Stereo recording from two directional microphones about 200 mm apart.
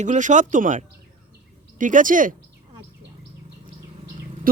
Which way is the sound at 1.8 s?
40° right (ahead or behind).